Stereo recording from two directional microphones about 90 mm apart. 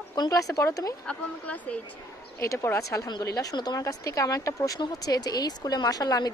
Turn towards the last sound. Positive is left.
turn(degrees=45)  # may be behind; listen again after turning